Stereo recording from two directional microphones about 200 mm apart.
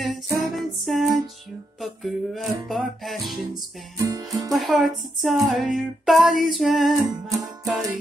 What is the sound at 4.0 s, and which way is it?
Music, 20° right (ahead or behind).